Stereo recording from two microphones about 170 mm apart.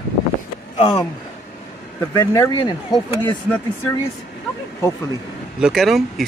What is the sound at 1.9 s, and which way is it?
Speech, 15° left (ahead or behind).